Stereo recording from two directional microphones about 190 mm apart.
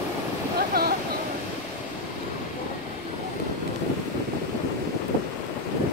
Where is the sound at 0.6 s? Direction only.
55° right (ahead or behind).